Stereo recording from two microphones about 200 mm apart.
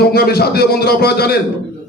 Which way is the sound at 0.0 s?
50° left (ahead or behind).